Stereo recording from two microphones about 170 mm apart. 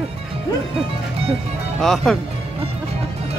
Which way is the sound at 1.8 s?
Centre (ahead or behind).